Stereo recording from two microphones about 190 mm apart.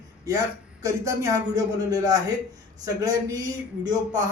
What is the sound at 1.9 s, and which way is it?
Speech, 20° right (ahead or behind).